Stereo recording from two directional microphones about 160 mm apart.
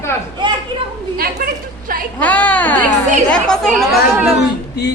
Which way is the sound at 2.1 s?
10° left (ahead or behind).